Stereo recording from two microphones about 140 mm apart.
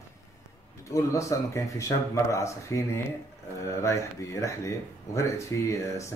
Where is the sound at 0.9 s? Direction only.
20° left (ahead or behind).